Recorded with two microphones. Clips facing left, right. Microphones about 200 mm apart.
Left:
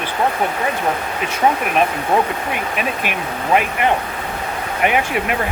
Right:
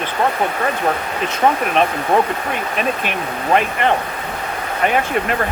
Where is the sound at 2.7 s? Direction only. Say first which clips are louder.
Right 1 dB; 10° left (ahead or behind).